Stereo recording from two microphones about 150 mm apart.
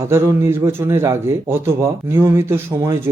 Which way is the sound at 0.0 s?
15° right (ahead or behind).